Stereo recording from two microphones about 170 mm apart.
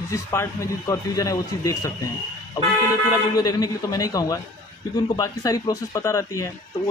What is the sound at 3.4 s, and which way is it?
Speech, 20° left (ahead or behind).